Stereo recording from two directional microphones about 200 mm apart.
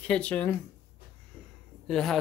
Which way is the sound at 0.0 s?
5° left (ahead or behind).